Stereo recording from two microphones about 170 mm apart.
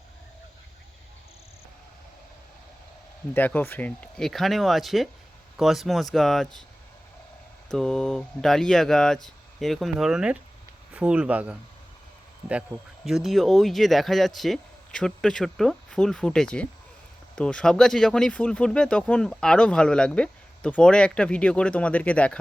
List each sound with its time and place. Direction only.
3.3 s speech: 10° left (ahead or behind)
7.7 s speech: 5° left (ahead or behind)